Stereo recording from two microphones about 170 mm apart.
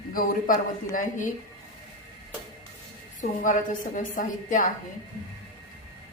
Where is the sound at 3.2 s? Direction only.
50° left (ahead or behind).